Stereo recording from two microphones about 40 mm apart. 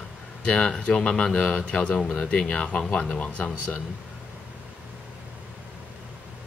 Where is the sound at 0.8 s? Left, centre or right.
Left.